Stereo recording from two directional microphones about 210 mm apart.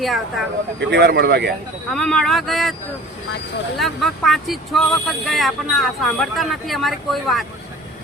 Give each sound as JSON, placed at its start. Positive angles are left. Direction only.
{"t": 0.0, "sound": "speech", "side_deg": 0}
{"t": 0.8, "sound": "speech", "side_deg": -55}
{"t": 1.9, "sound": "speech", "side_deg": 0}
{"t": 3.8, "sound": "speech", "side_deg": 0}